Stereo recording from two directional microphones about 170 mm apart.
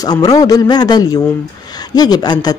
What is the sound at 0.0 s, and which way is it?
Speech, 20° left (ahead or behind).